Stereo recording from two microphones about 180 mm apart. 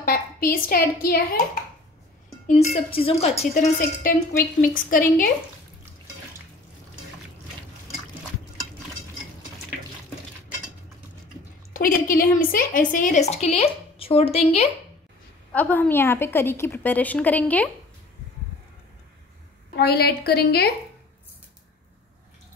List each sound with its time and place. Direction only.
0.0 s a woman's voice: 55° left (ahead or behind)
2.4 s a woman's voice: 35° left (ahead or behind)
3.5 s a woman's voice: 50° left (ahead or behind)
11.7 s a woman's voice: 50° left (ahead or behind); by 14.7 s 35° left (ahead or behind)
15.5 s a woman's voice: 10° left (ahead or behind)
19.7 s a woman's voice: 60° left (ahead or behind)